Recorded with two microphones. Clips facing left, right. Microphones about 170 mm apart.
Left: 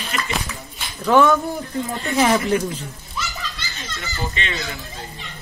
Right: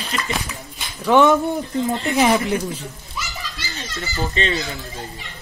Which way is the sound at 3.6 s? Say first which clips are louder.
Right 3 dB; 40° right (ahead or behind).